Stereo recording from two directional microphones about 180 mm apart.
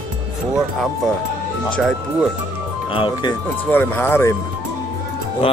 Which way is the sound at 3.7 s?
10° left (ahead or behind).